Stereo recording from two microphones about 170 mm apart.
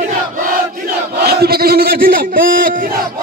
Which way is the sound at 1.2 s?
70° right (ahead or behind).